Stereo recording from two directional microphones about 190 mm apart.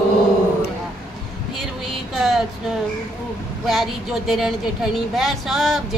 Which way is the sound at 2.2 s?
Centre (ahead or behind).